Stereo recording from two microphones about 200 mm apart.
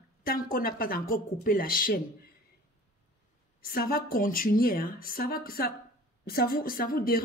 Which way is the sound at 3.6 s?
45° left (ahead or behind).